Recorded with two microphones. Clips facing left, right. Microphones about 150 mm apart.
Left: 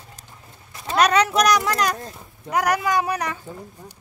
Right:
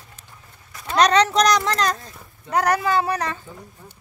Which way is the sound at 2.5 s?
10° left (ahead or behind).